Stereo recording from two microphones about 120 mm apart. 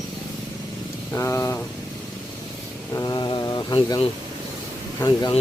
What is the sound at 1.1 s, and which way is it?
Speech, 25° left (ahead or behind).